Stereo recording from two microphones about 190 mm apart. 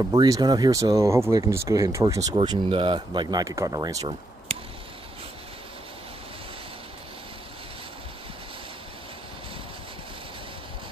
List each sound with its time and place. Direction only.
0.1 s speech: 20° right (ahead or behind)